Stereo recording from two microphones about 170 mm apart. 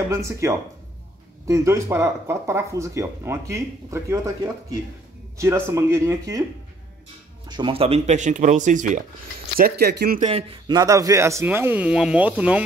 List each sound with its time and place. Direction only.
0.1 s speech: 20° right (ahead or behind)
7.4 s speech: 25° right (ahead or behind); by 9.0 s 45° right (ahead or behind)
9.6 s speech: 70° right (ahead or behind)
10.2 s speech: 35° right (ahead or behind)
10.7 s speech: 20° right (ahead or behind)